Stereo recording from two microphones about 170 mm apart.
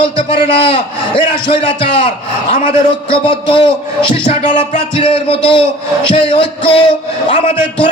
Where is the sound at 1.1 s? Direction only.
30° left (ahead or behind).